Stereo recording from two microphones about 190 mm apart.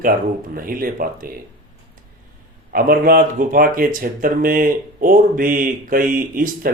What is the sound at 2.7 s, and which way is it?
Speech, 50° right (ahead or behind).